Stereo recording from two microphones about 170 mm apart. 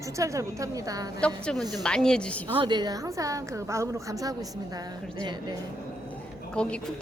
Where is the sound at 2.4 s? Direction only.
30° right (ahead or behind).